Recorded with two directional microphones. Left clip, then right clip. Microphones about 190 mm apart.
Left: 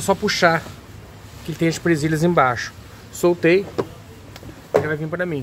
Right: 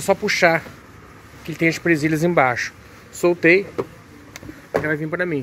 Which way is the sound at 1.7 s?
5° right (ahead or behind).